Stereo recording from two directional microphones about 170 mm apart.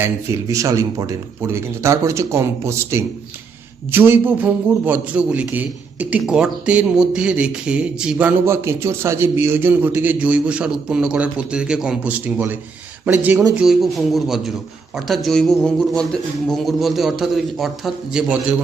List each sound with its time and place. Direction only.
0.0 s a man's voice: 15° right (ahead or behind)
13.6 s a man's voice: centre (ahead or behind)